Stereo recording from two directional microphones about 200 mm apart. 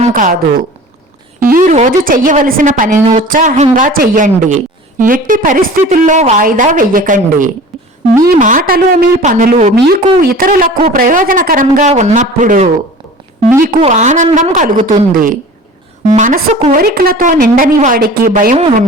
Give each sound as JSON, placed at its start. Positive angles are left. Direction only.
{"t": 0.1, "sound": "a woman's voice", "side_deg": -40}
{"t": 1.5, "sound": "a woman's voice", "side_deg": -40}
{"t": 9.7, "sound": "a woman's voice", "side_deg": -50}
{"t": 13.8, "sound": "a woman's voice", "side_deg": -35}